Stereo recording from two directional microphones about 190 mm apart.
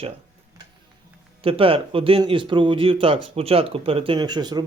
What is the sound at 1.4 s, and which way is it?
Speech, 30° right (ahead or behind).